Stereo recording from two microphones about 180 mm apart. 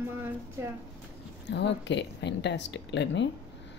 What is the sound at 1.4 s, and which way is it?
Speech, 75° left (ahead or behind).